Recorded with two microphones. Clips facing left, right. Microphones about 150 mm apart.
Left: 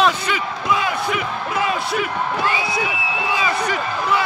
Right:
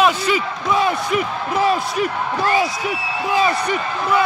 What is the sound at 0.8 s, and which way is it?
Speech, 35° right (ahead or behind).